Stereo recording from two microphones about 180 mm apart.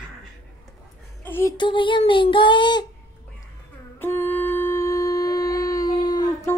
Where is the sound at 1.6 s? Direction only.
25° left (ahead or behind).